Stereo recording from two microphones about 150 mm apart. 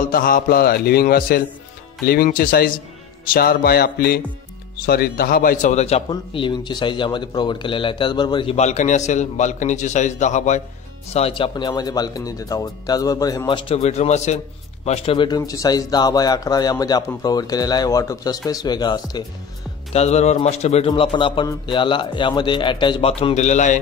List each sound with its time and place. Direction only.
0.1 s speech: 70° left (ahead or behind); by 1.4 s 90° left
2.0 s a man's voice: 75° left (ahead or behind)
3.3 s music: 90° left
4.8 s a man's voice: 90° left; by 6.0 s 45° left (ahead or behind)
6.0 s speech: 35° left (ahead or behind)
8.5 s a man's voice: 50° left (ahead or behind)
11.1 s a man's voice: 40° left (ahead or behind)
14.9 s a man's voice: 35° left (ahead or behind)
19.9 s a man's voice: 45° left (ahead or behind)